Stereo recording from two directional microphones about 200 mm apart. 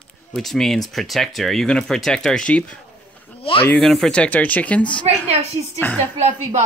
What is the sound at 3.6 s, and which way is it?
Speech, 5° left (ahead or behind).